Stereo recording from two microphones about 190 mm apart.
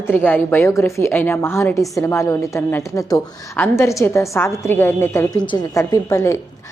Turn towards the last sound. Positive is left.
turn(degrees=15)  # may be behind; listen again after turning